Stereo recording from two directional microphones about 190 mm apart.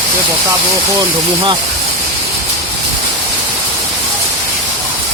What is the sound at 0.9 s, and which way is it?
Speech, 25° right (ahead or behind).